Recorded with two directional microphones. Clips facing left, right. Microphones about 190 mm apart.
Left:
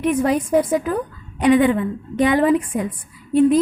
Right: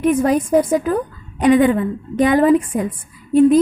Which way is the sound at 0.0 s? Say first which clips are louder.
Right 3 dB; 45° right (ahead or behind).